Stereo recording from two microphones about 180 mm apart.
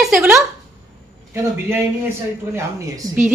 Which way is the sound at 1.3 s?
15° right (ahead or behind).